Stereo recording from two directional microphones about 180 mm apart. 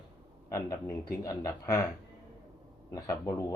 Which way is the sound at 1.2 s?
20° left (ahead or behind).